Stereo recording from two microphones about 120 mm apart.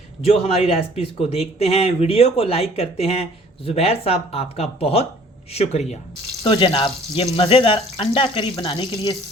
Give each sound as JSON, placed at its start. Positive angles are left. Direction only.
{"t": 0.2, "sound": "speech", "side_deg": 55}
{"t": 6.4, "sound": "speech", "side_deg": 45}